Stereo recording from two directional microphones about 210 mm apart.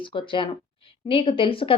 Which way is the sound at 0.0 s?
25° left (ahead or behind).